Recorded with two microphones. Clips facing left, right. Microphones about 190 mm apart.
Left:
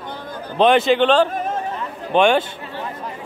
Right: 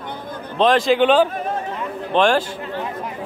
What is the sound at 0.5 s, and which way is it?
Speech, 5° left (ahead or behind).